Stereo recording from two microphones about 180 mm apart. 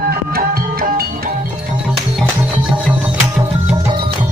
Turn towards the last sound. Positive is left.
turn(degrees=-10)  # may be behind; listen again after turning